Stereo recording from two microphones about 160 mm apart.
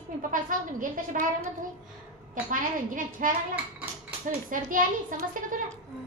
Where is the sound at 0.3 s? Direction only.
55° right (ahead or behind).